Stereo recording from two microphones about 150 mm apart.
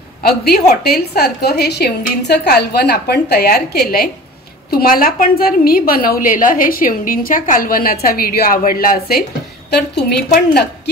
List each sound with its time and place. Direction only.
0.3 s a woman's voice: 90° left